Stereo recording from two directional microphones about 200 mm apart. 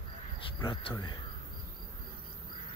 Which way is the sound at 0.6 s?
25° left (ahead or behind).